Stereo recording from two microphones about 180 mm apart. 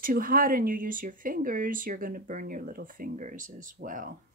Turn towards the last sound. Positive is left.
turn(degrees=-50)  # may be behind; listen again after turning